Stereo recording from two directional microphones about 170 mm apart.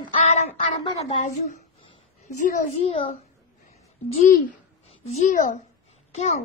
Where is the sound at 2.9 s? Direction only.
30° left (ahead or behind).